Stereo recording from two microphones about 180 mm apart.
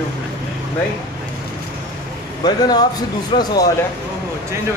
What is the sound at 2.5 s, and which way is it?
Speech, 20° left (ahead or behind).